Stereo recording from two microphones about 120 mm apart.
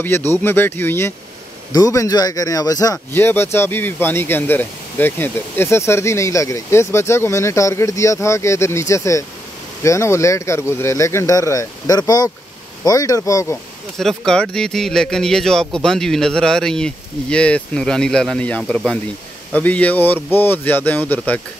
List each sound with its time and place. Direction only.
0.4 s speech: 20° left (ahead or behind)
1.7 s speech: 30° left (ahead or behind)
3.1 s speech: 20° left (ahead or behind)
13.9 s speech: 5° left (ahead or behind)